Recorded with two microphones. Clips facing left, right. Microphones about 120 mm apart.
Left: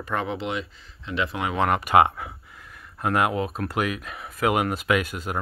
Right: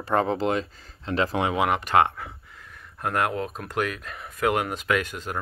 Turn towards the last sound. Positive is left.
turn(degrees=10)  # may be behind; listen again after turning